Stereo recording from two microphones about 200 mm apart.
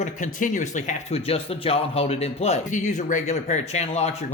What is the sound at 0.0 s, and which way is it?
Speech, 40° left (ahead or behind).